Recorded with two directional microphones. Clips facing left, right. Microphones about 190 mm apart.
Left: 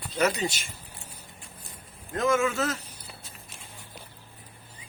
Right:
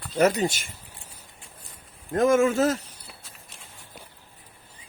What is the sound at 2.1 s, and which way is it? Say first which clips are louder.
Speech: right 5 dB; 50° right (ahead or behind).